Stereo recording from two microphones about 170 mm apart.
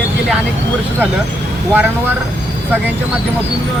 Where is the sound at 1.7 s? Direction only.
10° right (ahead or behind).